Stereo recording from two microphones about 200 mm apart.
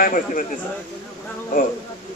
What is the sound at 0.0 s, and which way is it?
Speech, 40° left (ahead or behind).